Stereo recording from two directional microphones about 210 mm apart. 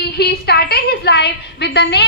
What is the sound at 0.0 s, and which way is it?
A woman's voice, 50° left (ahead or behind).